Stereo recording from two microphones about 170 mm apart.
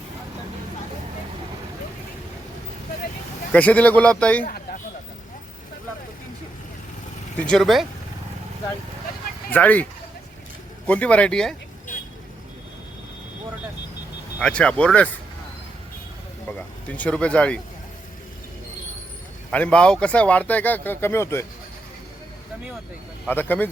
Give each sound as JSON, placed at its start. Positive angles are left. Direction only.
{"t": 3.5, "sound": "speech", "side_deg": 10}
{"t": 4.4, "sound": "a sound", "side_deg": 50}
{"t": 7.3, "sound": "speech", "side_deg": 5}
{"t": 9.5, "sound": "speech", "side_deg": 10}
{"t": 10.8, "sound": "speech", "side_deg": 10}
{"t": 14.3, "sound": "speech", "side_deg": 5}
{"t": 16.5, "sound": "speech", "side_deg": 10}
{"t": 19.5, "sound": "speech", "side_deg": 5}
{"t": 23.2, "sound": "speech", "side_deg": 10}